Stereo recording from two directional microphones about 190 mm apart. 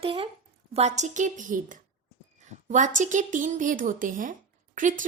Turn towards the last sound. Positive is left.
turn(degrees=-45)  # may be behind; listen again after turning